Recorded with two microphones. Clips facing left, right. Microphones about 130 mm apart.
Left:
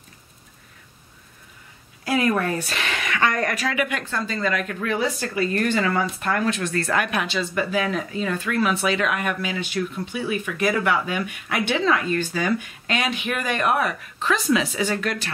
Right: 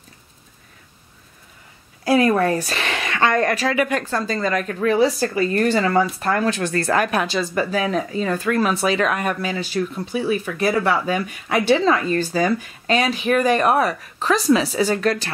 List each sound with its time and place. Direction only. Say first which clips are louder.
2.0 s speech: right 5 dB; 35° right (ahead or behind)